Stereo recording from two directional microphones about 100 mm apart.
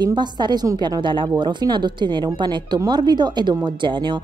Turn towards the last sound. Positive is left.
turn(degrees=-50)  # may be behind; listen again after turning